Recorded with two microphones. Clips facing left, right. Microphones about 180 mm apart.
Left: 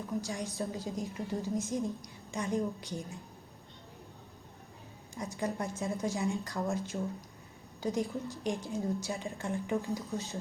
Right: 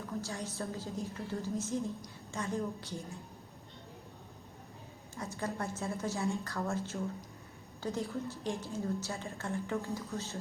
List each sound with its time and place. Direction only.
0.2 s a woman's voice: 15° left (ahead or behind)
5.1 s a woman's voice: 15° left (ahead or behind)